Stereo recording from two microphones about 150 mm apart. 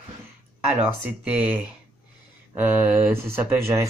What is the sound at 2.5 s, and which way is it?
Speech, 15° right (ahead or behind).